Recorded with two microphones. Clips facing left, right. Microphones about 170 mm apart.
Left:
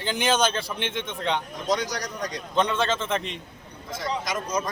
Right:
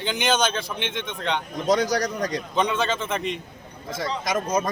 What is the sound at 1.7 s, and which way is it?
Speech, 55° right (ahead or behind).